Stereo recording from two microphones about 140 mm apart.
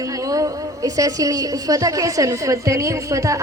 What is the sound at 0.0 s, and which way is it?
A woman's voice, 25° right (ahead or behind).